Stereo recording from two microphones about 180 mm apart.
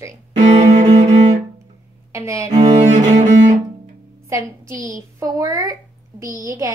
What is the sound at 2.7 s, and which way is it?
Music, 40° right (ahead or behind).